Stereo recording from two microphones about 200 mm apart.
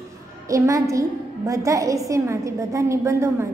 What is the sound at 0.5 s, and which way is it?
A woman's voice, 15° right (ahead or behind).